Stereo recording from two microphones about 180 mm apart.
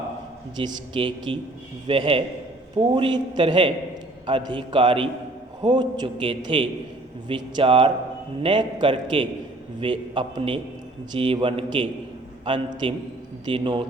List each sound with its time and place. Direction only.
0.5 s a man's voice: 25° right (ahead or behind)